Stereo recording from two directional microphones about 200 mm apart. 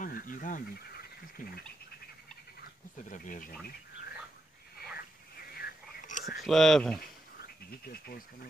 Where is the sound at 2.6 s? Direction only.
40° left (ahead or behind).